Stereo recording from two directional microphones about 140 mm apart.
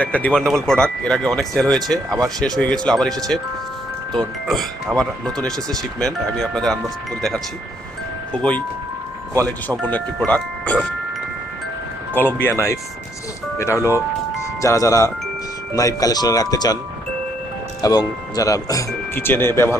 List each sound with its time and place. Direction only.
0.0 s speech: 10° left (ahead or behind)
4.4 s speech: centre (ahead or behind)
9.8 s speech: 10° left (ahead or behind)
12.1 s speech: 15° left (ahead or behind)
13.7 s speech: 15° right (ahead or behind)
14.6 s speech: 20° left (ahead or behind)
17.8 s speech: 25° left (ahead or behind)